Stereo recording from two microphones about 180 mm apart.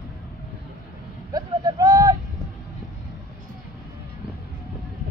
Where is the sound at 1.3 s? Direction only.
20° right (ahead or behind).